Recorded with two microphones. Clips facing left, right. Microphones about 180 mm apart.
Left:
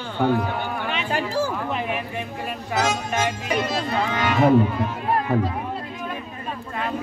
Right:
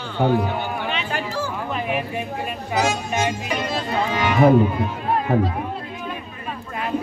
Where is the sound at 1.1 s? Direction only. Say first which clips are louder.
Left 3 dB; 35° left (ahead or behind).